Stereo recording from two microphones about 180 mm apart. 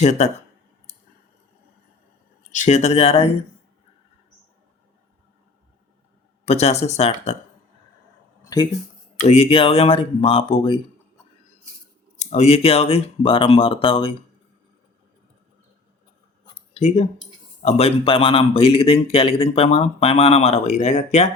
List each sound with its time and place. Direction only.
0.0 s speech: 40° left (ahead or behind)
2.5 s speech: 40° left (ahead or behind)
6.4 s speech: 35° left (ahead or behind)
9.2 s speech: 35° left (ahead or behind)
12.2 s speech: 35° left (ahead or behind)
16.7 s speech: 35° left (ahead or behind)